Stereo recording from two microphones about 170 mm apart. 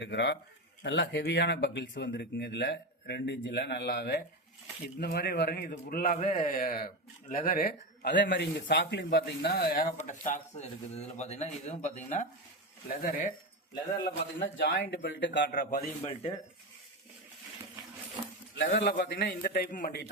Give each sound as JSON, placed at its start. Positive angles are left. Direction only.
{"t": 0.0, "sound": "a man's voice", "side_deg": 90}
{"t": 10.0, "sound": "speech", "side_deg": 45}
{"t": 14.0, "sound": "speech", "side_deg": 90}
{"t": 18.5, "sound": "a man's voice", "side_deg": 90}